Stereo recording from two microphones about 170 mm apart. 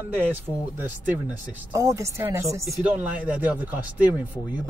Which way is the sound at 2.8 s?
10° right (ahead or behind).